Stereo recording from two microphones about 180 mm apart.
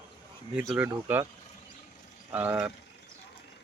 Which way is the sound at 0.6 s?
5° right (ahead or behind).